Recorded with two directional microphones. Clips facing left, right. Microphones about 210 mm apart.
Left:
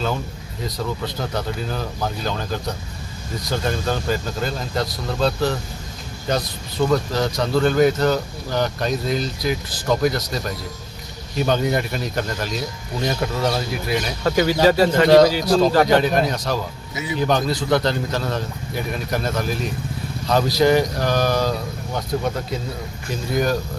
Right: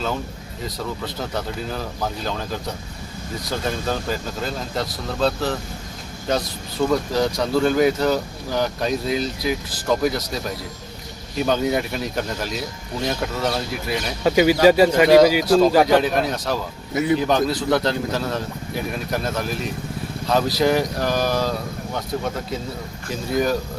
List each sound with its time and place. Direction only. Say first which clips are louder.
1.0 s speech: left 2 dB; 5° right (ahead or behind)
3.6 s speech: left 1 dB; centre (ahead or behind)
6.9 s speech: right 1 dB; 10° right (ahead or behind)
14.3 s speech: right 3 dB; 15° right (ahead or behind)
16.9 s a man's voice: right 9 dB; 60° right (ahead or behind)
17.2 s speech: even; centre (ahead or behind)
23.3 s speech: even; 5° right (ahead or behind)